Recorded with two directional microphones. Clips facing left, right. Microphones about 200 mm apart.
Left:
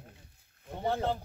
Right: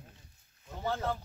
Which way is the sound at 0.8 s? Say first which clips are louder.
Left 3 dB; 30° left (ahead or behind).